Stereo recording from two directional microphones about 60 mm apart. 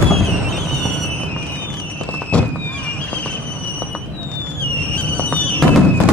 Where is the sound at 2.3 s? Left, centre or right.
Centre.